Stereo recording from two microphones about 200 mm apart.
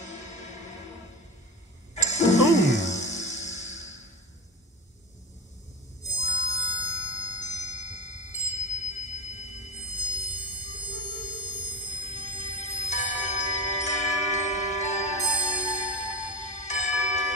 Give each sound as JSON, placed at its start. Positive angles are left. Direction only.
{"t": 2.0, "sound": "music", "side_deg": 35}
{"t": 6.1, "sound": "music", "side_deg": 35}